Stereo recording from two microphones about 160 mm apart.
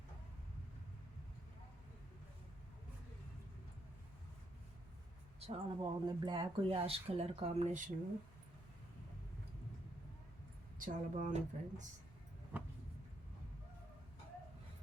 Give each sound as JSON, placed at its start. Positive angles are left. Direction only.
{"t": 5.4, "sound": "speech", "side_deg": -35}
{"t": 10.8, "sound": "a woman's voice", "side_deg": -55}
{"t": 12.5, "sound": "vehicle", "side_deg": -10}